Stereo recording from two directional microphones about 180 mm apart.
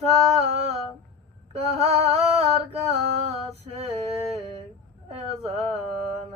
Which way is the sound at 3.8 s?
35° right (ahead or behind).